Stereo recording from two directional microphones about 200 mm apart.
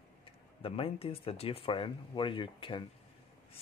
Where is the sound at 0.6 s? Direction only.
30° left (ahead or behind).